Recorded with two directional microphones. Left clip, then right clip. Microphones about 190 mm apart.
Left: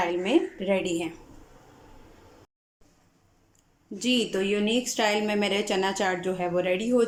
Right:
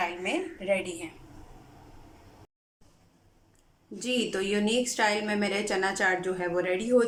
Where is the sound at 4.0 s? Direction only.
10° left (ahead or behind).